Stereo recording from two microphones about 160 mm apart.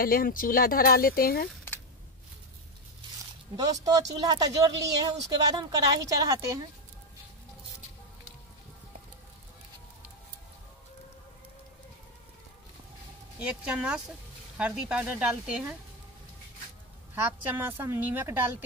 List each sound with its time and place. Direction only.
0.0 s speech: 65° left (ahead or behind)
3.8 s speech: 25° right (ahead or behind)
13.4 s speech: 5° right (ahead or behind)
17.1 s speech: 10° right (ahead or behind)